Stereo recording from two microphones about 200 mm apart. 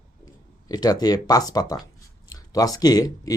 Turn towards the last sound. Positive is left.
turn(degrees=20)  # may be behind; listen again after turning